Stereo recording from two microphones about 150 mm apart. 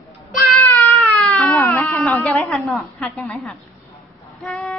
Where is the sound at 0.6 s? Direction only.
10° left (ahead or behind).